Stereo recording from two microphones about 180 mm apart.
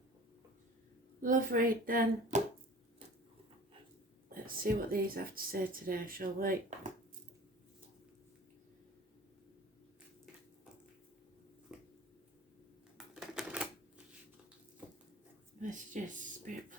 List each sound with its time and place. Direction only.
1.2 s speech: 50° right (ahead or behind)
4.4 s speech: 50° right (ahead or behind)
11.7 s a sound: 5° right (ahead or behind)
13.0 s typewriter: 5° right (ahead or behind)
15.6 s speech: 45° right (ahead or behind)